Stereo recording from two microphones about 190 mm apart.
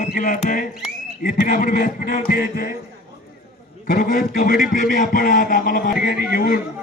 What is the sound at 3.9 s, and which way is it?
A man's voice, 50° left (ahead or behind).